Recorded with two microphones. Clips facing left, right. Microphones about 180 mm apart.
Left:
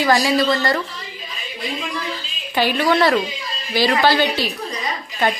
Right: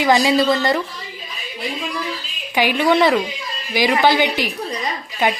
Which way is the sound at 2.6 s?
15° right (ahead or behind).